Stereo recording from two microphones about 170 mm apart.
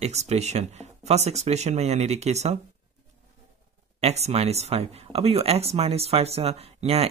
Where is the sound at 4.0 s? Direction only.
40° right (ahead or behind).